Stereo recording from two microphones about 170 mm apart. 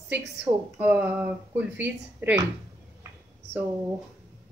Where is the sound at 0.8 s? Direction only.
10° right (ahead or behind).